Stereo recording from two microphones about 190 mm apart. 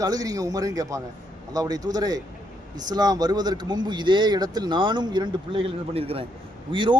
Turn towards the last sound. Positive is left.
turn(degrees=-25)  # may be behind; listen again after turning